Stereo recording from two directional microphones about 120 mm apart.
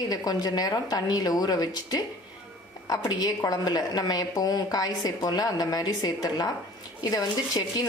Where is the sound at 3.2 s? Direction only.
35° left (ahead or behind).